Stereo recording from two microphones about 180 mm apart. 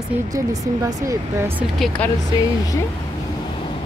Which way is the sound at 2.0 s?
5° left (ahead or behind).